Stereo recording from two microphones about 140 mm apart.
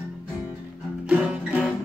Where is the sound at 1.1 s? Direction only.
5° right (ahead or behind).